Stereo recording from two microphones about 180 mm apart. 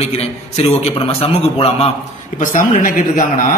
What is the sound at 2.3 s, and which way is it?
Speech, 45° left (ahead or behind).